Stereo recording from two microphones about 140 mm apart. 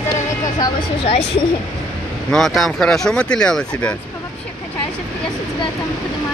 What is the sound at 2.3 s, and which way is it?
Speech, centre (ahead or behind).